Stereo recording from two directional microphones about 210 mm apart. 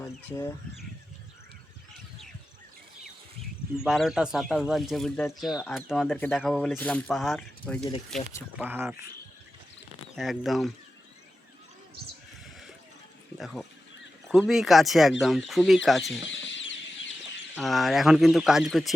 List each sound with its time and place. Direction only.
0.0 s speech: 15° left (ahead or behind)
3.8 s speech: centre (ahead or behind)
6.1 s speech: 10° left (ahead or behind)
8.5 s speech: 10° right (ahead or behind)
10.2 s speech: centre (ahead or behind)
13.4 s speech: centre (ahead or behind)
16.3 s chicken: 60° left (ahead or behind)
17.5 s speech: centre (ahead or behind)